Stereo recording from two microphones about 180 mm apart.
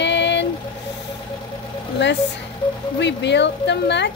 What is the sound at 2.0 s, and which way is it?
Speech, 75° left (ahead or behind).